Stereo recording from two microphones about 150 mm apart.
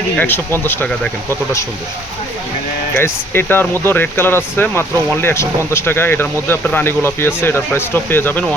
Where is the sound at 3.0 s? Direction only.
15° left (ahead or behind).